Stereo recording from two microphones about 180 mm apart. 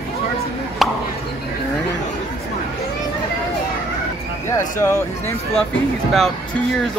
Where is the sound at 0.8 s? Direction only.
Centre (ahead or behind).